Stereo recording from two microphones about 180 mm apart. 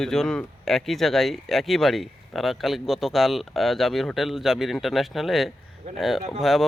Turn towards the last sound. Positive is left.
turn(degrees=0)  # may be behind; listen again after turning